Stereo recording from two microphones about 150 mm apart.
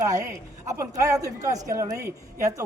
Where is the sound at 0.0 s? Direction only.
20° right (ahead or behind).